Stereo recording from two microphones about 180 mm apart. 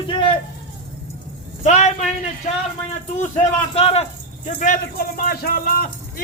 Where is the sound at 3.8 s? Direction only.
35° left (ahead or behind).